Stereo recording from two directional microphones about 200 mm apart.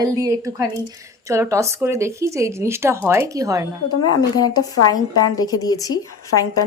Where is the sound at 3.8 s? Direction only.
20° left (ahead or behind).